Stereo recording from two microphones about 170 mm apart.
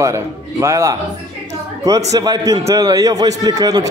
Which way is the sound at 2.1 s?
20° right (ahead or behind).